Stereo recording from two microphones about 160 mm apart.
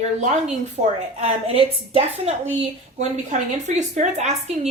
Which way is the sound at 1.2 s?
40° right (ahead or behind).